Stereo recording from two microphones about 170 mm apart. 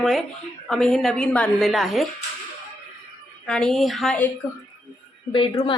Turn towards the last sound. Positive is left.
turn(degrees=25)  # may be behind; listen again after turning